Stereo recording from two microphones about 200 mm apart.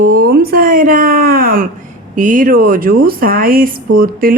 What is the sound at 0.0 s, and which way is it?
Speech, 45° right (ahead or behind).